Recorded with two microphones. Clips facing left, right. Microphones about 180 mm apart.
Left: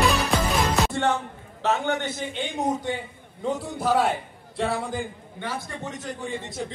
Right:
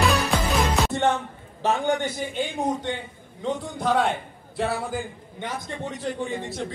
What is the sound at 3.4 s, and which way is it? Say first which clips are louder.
Speech: even; 5° left (ahead or behind).